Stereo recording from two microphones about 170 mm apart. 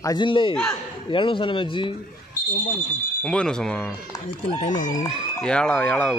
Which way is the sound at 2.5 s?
50° left (ahead or behind).